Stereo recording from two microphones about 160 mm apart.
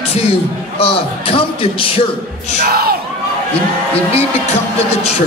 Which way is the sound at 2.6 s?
70° right (ahead or behind).